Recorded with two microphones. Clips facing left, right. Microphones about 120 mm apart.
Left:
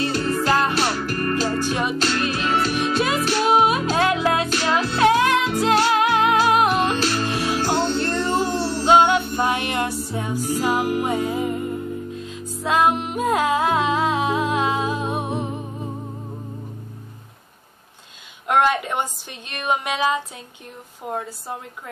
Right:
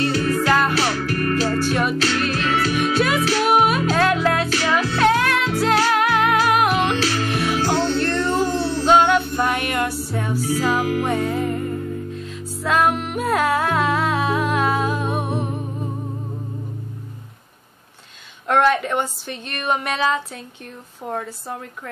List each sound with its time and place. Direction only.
0.0 s music: 30° left (ahead or behind)
0.9 s music: 35° left (ahead or behind)
1.5 s music: 20° left (ahead or behind)
18.5 s a woman's voice: 15° left (ahead or behind)